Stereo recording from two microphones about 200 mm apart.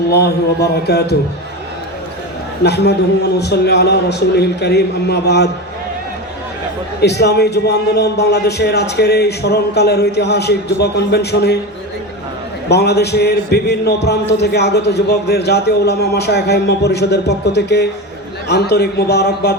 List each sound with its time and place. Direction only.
0.1 s a man's voice: 55° left (ahead or behind)
2.6 s a man's voice: 55° left (ahead or behind)
7.0 s a man's voice: 55° left (ahead or behind)
12.6 s a man's voice: 55° left (ahead or behind)